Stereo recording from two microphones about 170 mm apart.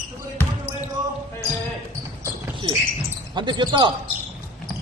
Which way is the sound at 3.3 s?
25° right (ahead or behind).